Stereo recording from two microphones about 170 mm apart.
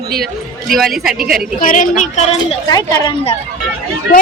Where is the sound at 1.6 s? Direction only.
50° left (ahead or behind).